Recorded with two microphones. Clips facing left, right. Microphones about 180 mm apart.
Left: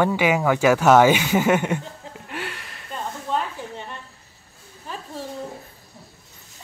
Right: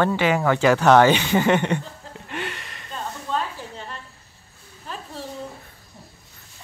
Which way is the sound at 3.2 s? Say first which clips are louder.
Left 1 dB; 15° left (ahead or behind).